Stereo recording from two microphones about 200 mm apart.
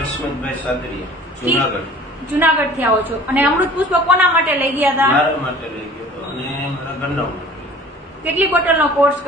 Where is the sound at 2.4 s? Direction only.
10° right (ahead or behind).